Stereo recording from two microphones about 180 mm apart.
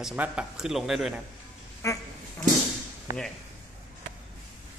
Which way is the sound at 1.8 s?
15° left (ahead or behind).